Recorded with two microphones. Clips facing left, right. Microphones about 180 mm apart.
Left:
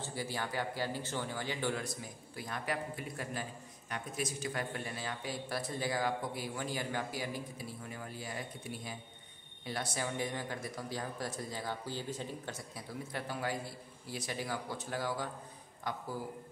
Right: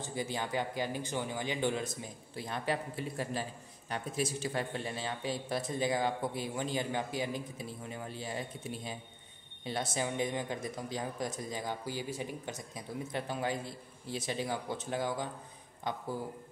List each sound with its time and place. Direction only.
0.0 s speech: 20° right (ahead or behind)